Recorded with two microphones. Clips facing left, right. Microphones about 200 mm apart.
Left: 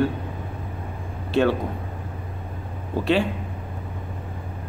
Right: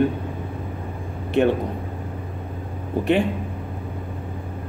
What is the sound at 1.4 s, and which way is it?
Speech, 15° right (ahead or behind).